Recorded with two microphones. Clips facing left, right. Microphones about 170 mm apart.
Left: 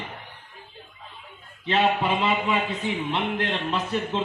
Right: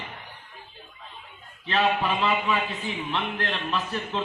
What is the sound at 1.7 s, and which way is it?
A man's voice, 25° left (ahead or behind).